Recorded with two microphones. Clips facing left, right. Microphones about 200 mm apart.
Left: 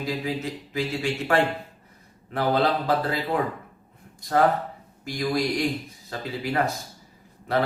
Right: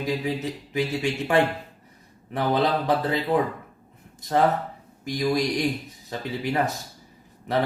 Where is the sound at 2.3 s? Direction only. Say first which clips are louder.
Even; 20° right (ahead or behind).